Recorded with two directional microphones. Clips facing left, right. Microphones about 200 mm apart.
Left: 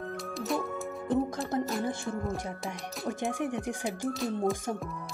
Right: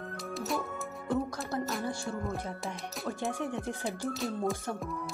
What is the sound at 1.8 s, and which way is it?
Music, 20° left (ahead or behind).